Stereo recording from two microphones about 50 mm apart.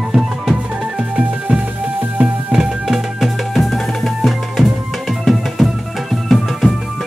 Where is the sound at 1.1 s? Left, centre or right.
Right.